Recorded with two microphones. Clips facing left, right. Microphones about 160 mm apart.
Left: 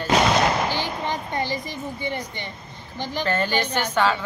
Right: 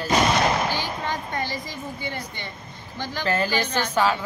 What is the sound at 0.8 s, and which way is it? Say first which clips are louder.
Speech: left 1 dB; 15° left (ahead or behind).